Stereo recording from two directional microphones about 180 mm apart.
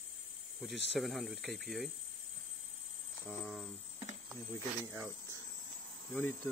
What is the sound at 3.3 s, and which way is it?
Speech, centre (ahead or behind).